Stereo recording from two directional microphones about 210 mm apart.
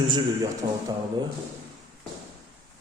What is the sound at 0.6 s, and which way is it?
Speech, 20° right (ahead or behind).